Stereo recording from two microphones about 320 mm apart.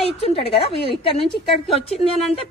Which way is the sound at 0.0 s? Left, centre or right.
Centre.